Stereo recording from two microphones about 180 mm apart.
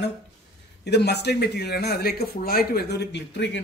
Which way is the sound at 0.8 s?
65° left (ahead or behind).